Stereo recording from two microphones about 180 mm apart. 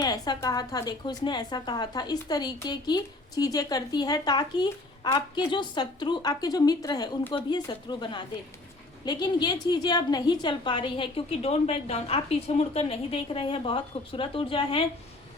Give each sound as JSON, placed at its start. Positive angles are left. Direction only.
{"t": 0.0, "sound": "a woman's voice", "side_deg": 20}